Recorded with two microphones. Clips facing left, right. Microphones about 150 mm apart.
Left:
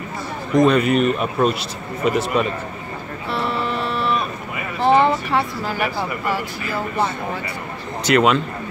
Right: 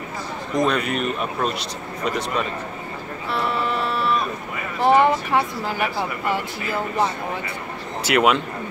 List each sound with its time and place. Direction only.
0.6 s a man's voice: centre (ahead or behind)
4.8 s a sound: 15° right (ahead or behind)
6.2 s speech: 20° right (ahead or behind)
8.0 s speech: 10° right (ahead or behind)